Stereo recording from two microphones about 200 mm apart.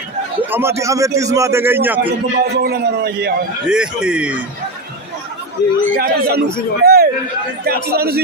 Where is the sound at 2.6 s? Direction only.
55° right (ahead or behind).